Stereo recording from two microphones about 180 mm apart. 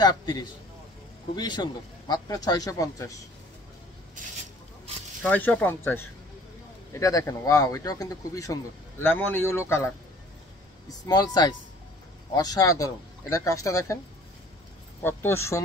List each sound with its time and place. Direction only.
0.0 s a man's voice: 25° left (ahead or behind)
5.2 s a man's voice: 10° left (ahead or behind)
15.0 s speech: 15° left (ahead or behind)